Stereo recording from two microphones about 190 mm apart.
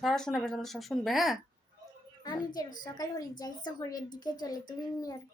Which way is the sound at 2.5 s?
20° left (ahead or behind).